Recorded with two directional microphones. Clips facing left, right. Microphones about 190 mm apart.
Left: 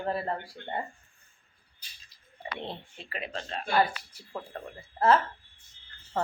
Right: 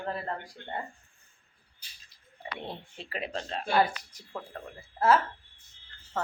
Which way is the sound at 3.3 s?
Centre (ahead or behind).